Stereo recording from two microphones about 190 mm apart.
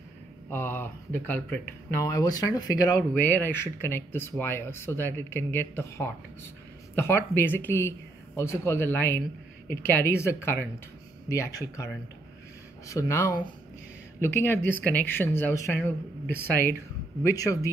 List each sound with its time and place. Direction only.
0.5 s speech: 10° left (ahead or behind)